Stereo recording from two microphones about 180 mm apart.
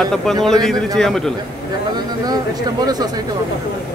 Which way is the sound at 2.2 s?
20° right (ahead or behind).